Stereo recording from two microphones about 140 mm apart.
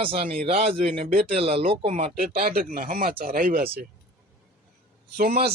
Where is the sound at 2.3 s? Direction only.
90° right.